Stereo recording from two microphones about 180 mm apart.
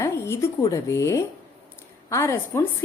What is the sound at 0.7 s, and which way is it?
A woman's voice, 15° left (ahead or behind).